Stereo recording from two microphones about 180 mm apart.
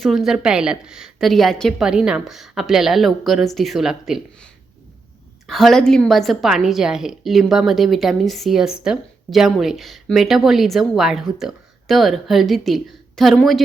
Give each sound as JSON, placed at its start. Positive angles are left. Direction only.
{"t": 0.0, "sound": "a woman's voice", "side_deg": 0}